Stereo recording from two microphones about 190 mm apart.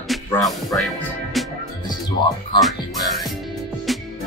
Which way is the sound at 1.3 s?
Centre (ahead or behind).